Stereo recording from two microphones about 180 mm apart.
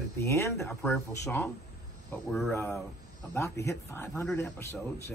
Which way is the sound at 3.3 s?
15° left (ahead or behind).